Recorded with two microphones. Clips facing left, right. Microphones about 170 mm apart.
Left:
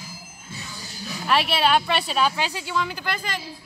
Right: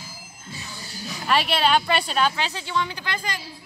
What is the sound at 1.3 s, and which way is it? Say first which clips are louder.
Speech: even; centre (ahead or behind).